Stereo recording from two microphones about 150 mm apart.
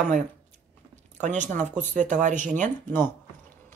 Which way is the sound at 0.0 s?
55° right (ahead or behind).